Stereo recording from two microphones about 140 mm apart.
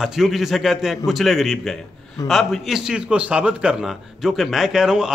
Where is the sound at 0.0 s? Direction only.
Centre (ahead or behind).